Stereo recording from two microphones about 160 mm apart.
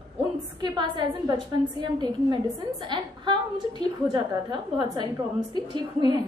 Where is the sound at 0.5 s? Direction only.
25° right (ahead or behind).